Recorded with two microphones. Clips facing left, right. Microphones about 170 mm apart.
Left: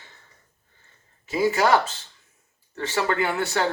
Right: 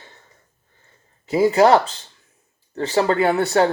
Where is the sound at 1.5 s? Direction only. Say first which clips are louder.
Right 6 dB; 30° right (ahead or behind).